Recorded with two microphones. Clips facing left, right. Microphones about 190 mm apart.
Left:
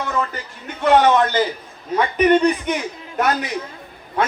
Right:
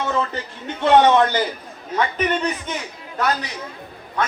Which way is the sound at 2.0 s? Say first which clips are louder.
Left 6 dB; 15° left (ahead or behind).